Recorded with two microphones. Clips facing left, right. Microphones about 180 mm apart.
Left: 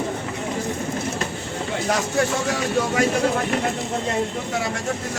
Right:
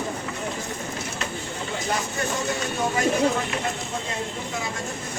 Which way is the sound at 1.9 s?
75° left (ahead or behind).